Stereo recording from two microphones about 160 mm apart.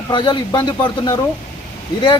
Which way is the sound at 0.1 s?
30° left (ahead or behind).